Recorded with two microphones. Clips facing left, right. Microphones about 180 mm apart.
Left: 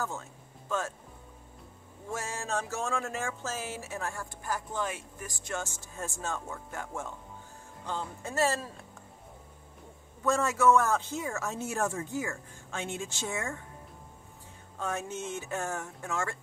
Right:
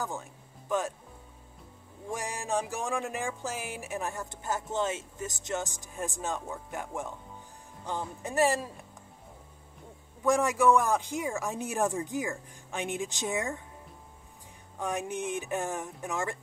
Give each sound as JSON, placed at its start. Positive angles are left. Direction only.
{"t": 0.0, "sound": "speech", "side_deg": -15}
{"t": 2.0, "sound": "speech", "side_deg": -15}
{"t": 10.2, "sound": "speech", "side_deg": -15}
{"t": 14.8, "sound": "speech", "side_deg": -15}